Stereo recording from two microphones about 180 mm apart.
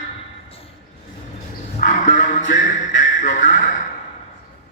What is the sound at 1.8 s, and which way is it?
Music, 45° left (ahead or behind).